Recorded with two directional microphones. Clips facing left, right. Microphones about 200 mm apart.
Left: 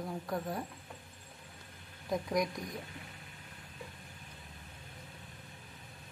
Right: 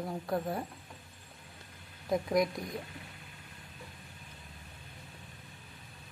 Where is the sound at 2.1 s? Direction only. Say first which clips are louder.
Right 4 dB; 5° right (ahead or behind).